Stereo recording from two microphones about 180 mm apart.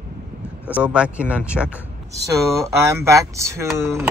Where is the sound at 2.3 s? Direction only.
15° right (ahead or behind).